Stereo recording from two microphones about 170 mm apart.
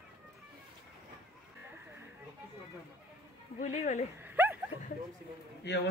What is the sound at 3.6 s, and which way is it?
Speech, 40° left (ahead or behind).